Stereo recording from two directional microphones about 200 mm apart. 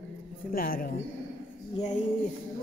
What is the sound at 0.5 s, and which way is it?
Speech, 45° left (ahead or behind).